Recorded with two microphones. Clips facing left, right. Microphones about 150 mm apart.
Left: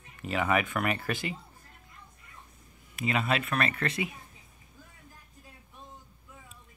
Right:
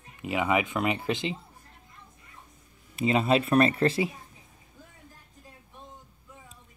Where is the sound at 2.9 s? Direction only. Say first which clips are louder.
Right 6 dB; 30° right (ahead or behind).